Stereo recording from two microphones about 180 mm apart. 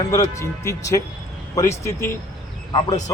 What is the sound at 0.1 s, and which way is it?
Speech, 15° left (ahead or behind).